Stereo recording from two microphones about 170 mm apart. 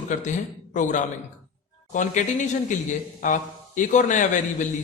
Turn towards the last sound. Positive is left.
turn(degrees=45)  # may be behind; listen again after turning